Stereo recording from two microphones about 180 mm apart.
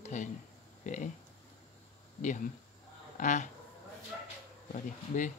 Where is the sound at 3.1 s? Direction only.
45° left (ahead or behind).